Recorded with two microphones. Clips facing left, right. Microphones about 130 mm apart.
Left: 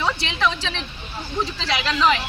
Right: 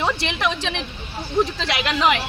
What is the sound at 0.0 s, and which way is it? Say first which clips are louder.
Speech: even; 20° right (ahead or behind).